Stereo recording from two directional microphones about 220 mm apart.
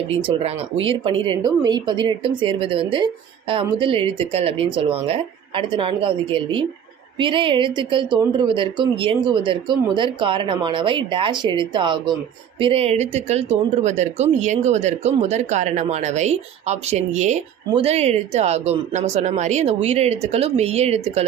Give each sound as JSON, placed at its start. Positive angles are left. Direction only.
{"t": 0.3, "sound": "speech", "side_deg": -30}